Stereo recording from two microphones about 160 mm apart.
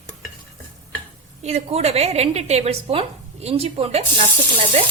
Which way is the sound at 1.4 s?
45° right (ahead or behind).